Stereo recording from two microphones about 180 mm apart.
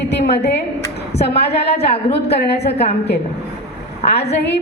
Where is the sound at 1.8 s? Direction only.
35° left (ahead or behind).